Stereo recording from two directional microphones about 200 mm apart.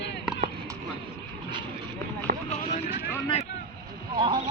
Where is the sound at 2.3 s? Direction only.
40° right (ahead or behind).